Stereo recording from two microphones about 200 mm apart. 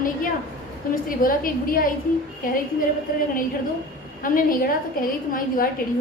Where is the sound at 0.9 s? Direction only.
45° left (ahead or behind).